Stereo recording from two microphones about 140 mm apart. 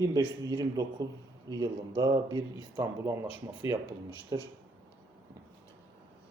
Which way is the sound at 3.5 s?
30° right (ahead or behind).